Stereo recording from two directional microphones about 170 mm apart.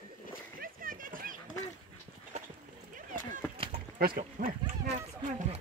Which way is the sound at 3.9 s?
55° right (ahead or behind).